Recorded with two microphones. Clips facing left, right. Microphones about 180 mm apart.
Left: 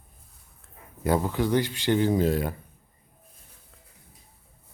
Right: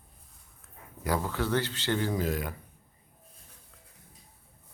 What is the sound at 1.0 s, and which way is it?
Speech, 20° left (ahead or behind).